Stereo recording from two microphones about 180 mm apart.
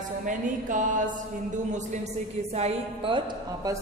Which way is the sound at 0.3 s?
45° right (ahead or behind).